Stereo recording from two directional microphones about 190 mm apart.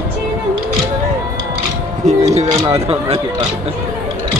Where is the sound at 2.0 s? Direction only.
35° right (ahead or behind).